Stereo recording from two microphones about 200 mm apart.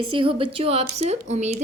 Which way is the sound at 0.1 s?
25° right (ahead or behind).